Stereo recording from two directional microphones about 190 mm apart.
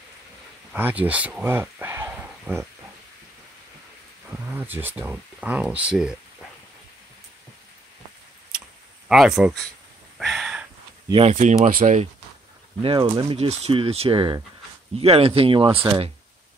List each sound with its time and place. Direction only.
0.7 s speech: 10° right (ahead or behind)
4.5 s speech: 10° right (ahead or behind)
9.1 s speech: centre (ahead or behind)
10.1 s a sound: centre (ahead or behind)
11.1 s speech: 30° right (ahead or behind)
11.3 s speech: 40° right (ahead or behind)
12.8 s speech: 25° right (ahead or behind)